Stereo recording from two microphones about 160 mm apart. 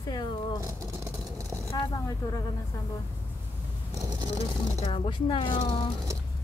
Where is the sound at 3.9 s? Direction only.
20° right (ahead or behind).